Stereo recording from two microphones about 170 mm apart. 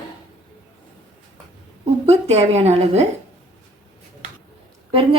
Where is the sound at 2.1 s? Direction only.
40° right (ahead or behind).